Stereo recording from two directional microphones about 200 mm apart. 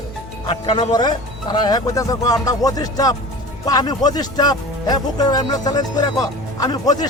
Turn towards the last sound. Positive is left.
turn(degrees=20)  # may be behind; listen again after turning